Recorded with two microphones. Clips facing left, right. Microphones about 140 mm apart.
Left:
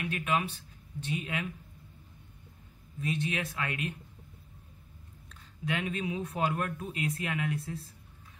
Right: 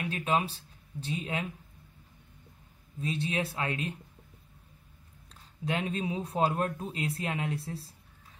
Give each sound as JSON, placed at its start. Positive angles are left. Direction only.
{"t": 0.0, "sound": "speech", "side_deg": -30}
{"t": 3.0, "sound": "speech", "side_deg": -30}
{"t": 5.3, "sound": "speech", "side_deg": -35}